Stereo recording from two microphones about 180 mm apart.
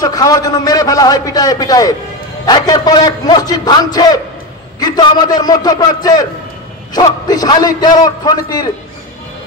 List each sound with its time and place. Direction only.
0.0 s a man's voice: 20° left (ahead or behind)